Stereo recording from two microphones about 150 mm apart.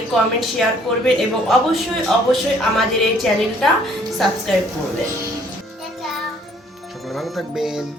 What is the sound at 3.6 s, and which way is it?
Speech, centre (ahead or behind).